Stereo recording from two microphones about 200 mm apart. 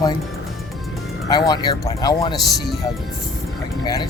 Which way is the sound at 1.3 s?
20° left (ahead or behind).